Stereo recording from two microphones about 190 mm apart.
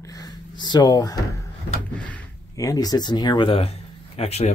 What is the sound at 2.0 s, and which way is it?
Speech, 15° left (ahead or behind).